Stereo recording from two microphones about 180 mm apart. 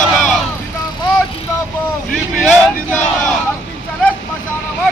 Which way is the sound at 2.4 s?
5° left (ahead or behind).